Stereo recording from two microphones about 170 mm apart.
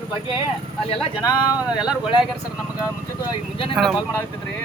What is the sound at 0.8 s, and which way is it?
Speech, 35° left (ahead or behind).